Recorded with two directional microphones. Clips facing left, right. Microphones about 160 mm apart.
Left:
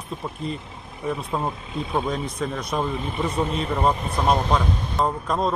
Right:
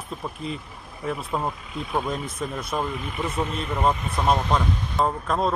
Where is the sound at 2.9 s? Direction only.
30° left (ahead or behind).